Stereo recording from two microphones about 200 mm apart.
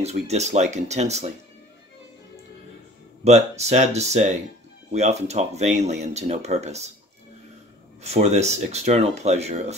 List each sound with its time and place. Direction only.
0.0 s speech: 35° right (ahead or behind)
3.3 s speech: 35° right (ahead or behind)
8.0 s speech: 35° right (ahead or behind)